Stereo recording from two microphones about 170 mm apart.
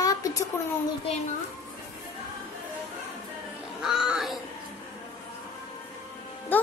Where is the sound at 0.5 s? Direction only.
15° left (ahead or behind).